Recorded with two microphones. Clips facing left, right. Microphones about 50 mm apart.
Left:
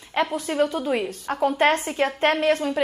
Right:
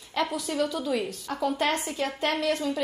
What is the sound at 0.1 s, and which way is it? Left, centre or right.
A woman's voice, left.